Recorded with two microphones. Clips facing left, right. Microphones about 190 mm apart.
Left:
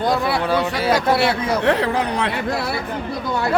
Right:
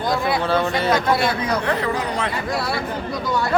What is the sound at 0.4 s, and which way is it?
Speech, 10° left (ahead or behind).